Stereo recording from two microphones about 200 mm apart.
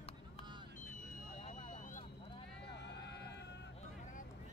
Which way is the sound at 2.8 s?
60° left (ahead or behind).